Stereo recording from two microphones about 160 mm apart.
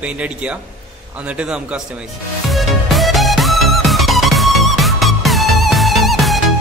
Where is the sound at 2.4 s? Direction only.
Centre (ahead or behind).